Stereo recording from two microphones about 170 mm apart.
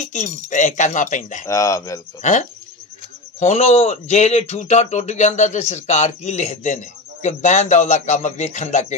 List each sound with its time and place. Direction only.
0.1 s speech: 45° left (ahead or behind)
1.5 s speech: 20° left (ahead or behind)
3.3 s speech: 40° left (ahead or behind)